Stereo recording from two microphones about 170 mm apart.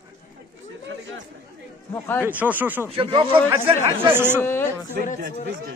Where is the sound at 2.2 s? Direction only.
10° right (ahead or behind).